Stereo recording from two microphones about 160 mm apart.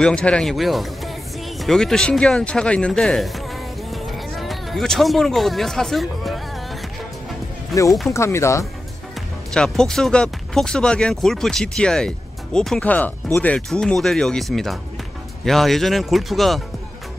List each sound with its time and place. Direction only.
0.0 s speech: 5° left (ahead or behind)
3.9 s a sound: centre (ahead or behind)
7.7 s speech: centre (ahead or behind)
8.1 s speech: 15° left (ahead or behind)
9.5 s speech: 5° left (ahead or behind)